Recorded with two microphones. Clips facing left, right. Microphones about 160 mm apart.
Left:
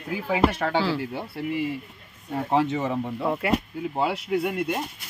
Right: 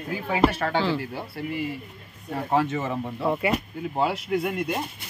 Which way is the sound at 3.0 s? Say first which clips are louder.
Right 1 dB; 5° right (ahead or behind).